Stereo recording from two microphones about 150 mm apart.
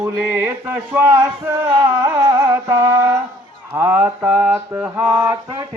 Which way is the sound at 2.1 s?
20° right (ahead or behind).